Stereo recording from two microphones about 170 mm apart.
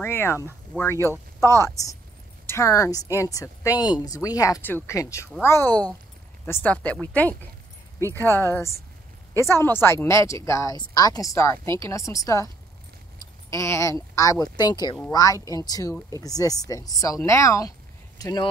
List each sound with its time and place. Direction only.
0.0 s speech: 15° left (ahead or behind)
13.5 s speech: 15° left (ahead or behind)